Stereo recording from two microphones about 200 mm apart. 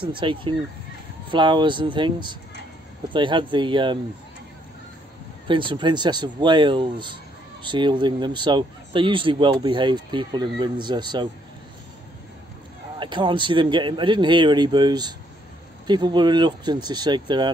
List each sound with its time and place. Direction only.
0.0 s speech: 25° right (ahead or behind)
5.5 s speech: 25° right (ahead or behind)
13.0 s speech: 25° right (ahead or behind)